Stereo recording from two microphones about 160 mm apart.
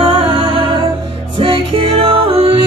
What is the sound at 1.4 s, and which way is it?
Music, 30° right (ahead or behind).